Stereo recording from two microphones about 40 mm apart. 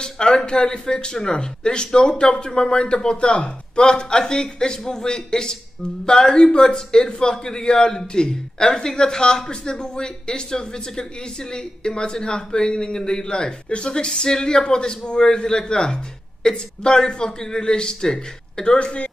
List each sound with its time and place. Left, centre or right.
0.0 s a man's voice: left
18.8 s a man's voice: left